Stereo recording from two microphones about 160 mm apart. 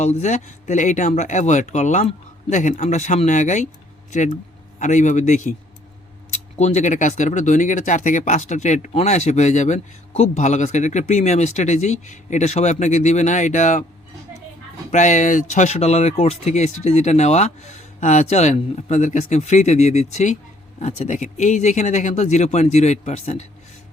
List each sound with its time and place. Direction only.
0.0 s speech: 45° left (ahead or behind)
4.8 s speech: 50° left (ahead or behind)
14.9 s speech: 50° left (ahead or behind)